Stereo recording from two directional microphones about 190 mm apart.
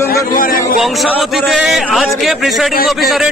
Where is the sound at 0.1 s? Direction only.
50° left (ahead or behind).